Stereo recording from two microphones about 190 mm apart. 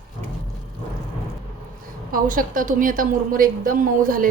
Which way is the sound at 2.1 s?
45° right (ahead or behind).